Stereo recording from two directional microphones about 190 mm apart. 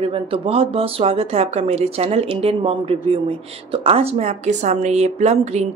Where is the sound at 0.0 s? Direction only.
30° right (ahead or behind).